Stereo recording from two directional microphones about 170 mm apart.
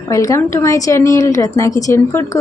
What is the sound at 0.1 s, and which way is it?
A woman's voice, 20° left (ahead or behind).